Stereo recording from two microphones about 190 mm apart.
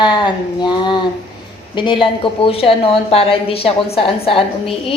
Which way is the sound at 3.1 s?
30° left (ahead or behind).